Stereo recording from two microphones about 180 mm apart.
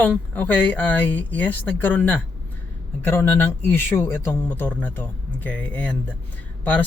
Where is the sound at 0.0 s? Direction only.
10° left (ahead or behind).